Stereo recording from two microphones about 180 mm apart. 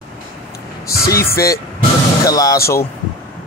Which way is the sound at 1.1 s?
15° left (ahead or behind).